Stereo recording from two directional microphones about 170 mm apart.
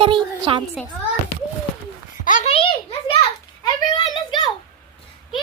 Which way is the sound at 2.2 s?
50° left (ahead or behind).